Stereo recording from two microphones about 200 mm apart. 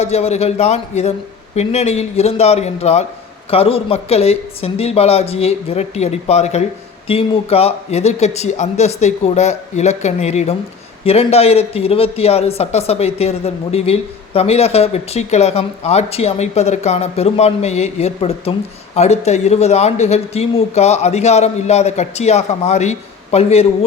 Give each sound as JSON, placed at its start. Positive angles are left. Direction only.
{"t": 0.0, "sound": "a man's voice", "side_deg": 30}